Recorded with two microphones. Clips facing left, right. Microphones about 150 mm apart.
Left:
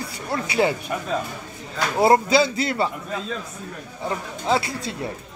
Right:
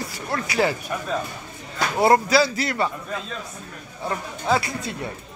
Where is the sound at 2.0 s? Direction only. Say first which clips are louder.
Left 1 dB; 25° left (ahead or behind).